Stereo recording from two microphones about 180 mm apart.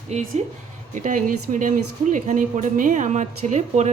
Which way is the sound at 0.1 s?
40° right (ahead or behind).